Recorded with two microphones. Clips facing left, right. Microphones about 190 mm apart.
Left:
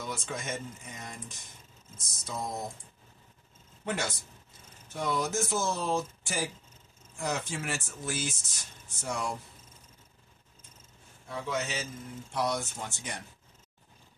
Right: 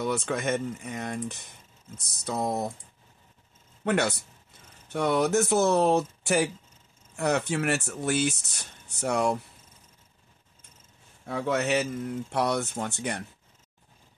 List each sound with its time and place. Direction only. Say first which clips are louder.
0.0 s speech: right 9 dB; 65° right (ahead or behind)
3.8 s speech: right 8 dB; 65° right (ahead or behind)
11.2 s speech: right 7 dB; 60° right (ahead or behind)